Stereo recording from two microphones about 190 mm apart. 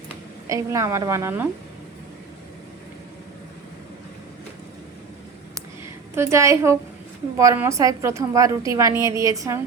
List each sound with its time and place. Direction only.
0.4 s a woman's voice: 15° right (ahead or behind)
6.1 s a woman's voice: 15° right (ahead or behind)